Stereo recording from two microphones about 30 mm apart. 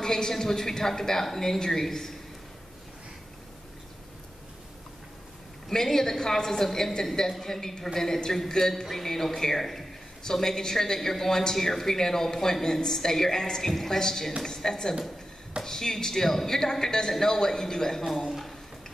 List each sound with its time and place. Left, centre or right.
0.0 s speech: left
5.7 s speech: centre
18.0 s speech: centre